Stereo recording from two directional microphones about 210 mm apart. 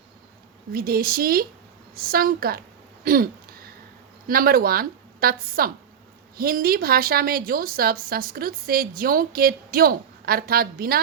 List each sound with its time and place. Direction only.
0.7 s speech: 45° right (ahead or behind)
3.0 s a sound: 45° right (ahead or behind)
4.3 s speech: 45° right (ahead or behind)